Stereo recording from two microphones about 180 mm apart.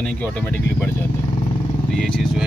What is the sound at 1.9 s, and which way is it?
Speech, 5° left (ahead or behind).